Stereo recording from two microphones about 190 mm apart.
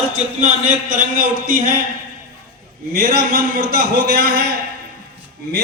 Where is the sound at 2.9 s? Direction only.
55° right (ahead or behind).